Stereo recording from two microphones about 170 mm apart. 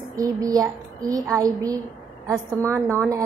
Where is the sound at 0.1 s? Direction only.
20° right (ahead or behind).